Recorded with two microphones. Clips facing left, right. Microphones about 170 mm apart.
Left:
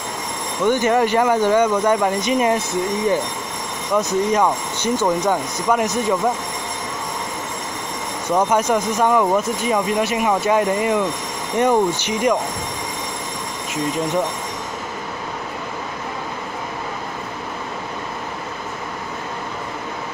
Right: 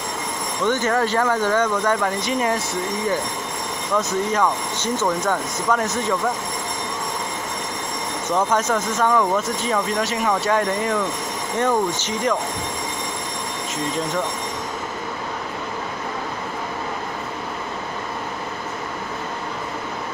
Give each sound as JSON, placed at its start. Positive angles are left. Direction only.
{"t": 0.7, "sound": "speech", "side_deg": 15}
{"t": 3.9, "sound": "speech", "side_deg": 15}
{"t": 8.4, "sound": "speech", "side_deg": 15}